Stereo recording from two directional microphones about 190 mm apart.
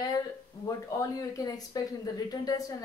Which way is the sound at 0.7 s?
15° left (ahead or behind).